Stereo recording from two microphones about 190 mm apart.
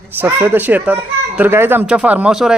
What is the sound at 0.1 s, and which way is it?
Speech, 10° right (ahead or behind).